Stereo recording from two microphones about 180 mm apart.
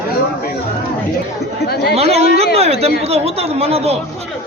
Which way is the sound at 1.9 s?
35° right (ahead or behind).